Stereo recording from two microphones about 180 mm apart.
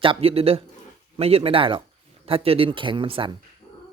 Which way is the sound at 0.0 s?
30° right (ahead or behind).